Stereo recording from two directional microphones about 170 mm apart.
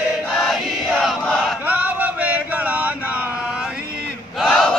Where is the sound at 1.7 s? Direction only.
10° right (ahead or behind).